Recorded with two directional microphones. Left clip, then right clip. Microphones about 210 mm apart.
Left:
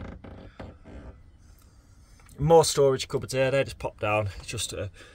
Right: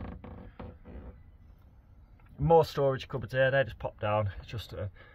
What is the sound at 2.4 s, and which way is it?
Speech, 20° left (ahead or behind).